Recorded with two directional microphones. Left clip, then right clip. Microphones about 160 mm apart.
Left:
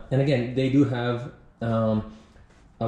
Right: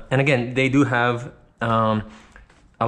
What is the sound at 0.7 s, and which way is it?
Speech, 10° right (ahead or behind).